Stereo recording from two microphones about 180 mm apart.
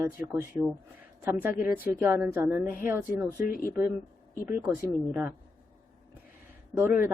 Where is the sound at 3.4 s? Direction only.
55° left (ahead or behind).